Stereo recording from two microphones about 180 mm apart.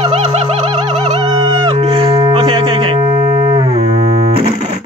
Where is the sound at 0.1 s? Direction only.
35° right (ahead or behind).